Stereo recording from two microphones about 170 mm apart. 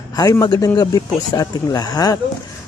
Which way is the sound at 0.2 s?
20° left (ahead or behind).